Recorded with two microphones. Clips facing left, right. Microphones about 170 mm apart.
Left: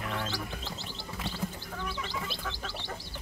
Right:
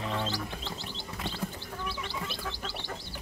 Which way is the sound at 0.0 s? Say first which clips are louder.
Right 2 dB; 20° right (ahead or behind).